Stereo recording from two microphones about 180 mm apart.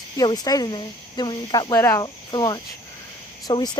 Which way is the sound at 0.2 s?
20° left (ahead or behind).